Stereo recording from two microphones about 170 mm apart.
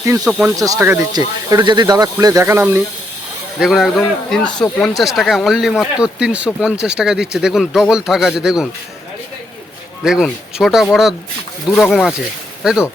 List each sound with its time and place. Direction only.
0.3 s speech: 10° right (ahead or behind)
0.5 s speech: 20° right (ahead or behind)
3.6 s speech: centre (ahead or behind)
10.0 s speech: centre (ahead or behind)